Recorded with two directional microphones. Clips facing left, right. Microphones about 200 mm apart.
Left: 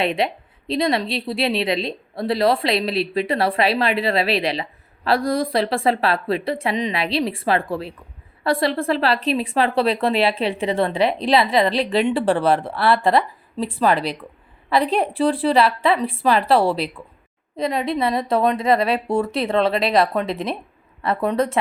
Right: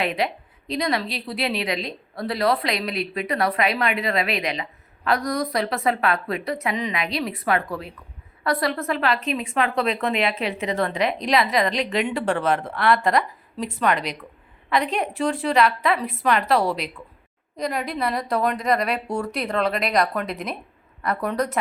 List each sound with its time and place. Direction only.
0.0 s a woman's voice: 25° left (ahead or behind)